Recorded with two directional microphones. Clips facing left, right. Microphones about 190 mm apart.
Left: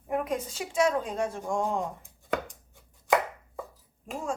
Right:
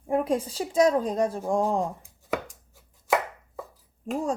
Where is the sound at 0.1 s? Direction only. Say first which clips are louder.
Right 5 dB; 30° right (ahead or behind).